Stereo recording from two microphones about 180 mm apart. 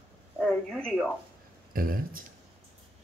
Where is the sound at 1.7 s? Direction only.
50° right (ahead or behind).